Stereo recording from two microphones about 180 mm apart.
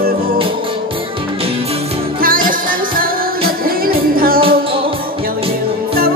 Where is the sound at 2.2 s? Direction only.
50° right (ahead or behind).